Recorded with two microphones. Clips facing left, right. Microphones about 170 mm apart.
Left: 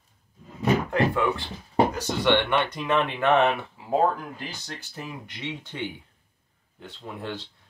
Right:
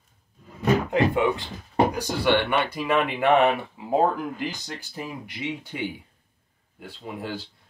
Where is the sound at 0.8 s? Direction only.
20° right (ahead or behind).